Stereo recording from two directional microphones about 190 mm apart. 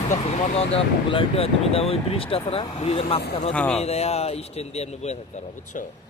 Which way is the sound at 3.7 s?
35° left (ahead or behind).